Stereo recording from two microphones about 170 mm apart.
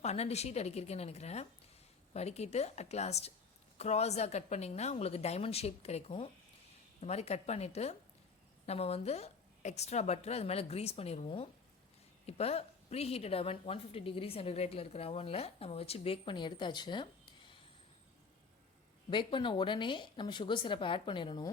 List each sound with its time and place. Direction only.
0.0 s a woman's voice: 40° left (ahead or behind)
19.1 s a woman's voice: 30° left (ahead or behind)